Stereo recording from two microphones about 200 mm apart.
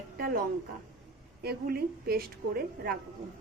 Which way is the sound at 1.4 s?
50° right (ahead or behind).